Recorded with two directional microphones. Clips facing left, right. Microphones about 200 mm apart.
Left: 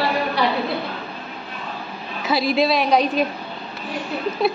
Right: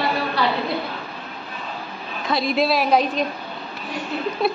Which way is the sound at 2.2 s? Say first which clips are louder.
Left 2 dB; 5° left (ahead or behind).